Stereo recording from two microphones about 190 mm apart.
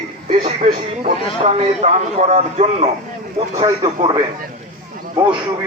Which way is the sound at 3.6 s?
25° right (ahead or behind).